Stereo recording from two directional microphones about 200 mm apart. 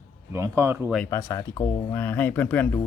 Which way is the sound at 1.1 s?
15° left (ahead or behind).